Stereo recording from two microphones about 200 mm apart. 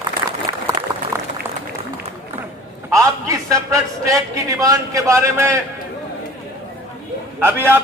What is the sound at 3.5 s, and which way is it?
A man's voice, 15° right (ahead or behind).